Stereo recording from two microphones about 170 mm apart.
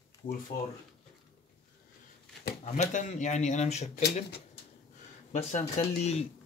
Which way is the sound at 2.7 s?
45° left (ahead or behind).